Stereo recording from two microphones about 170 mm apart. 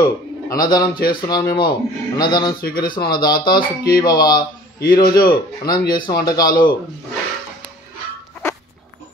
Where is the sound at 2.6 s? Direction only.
60° left (ahead or behind).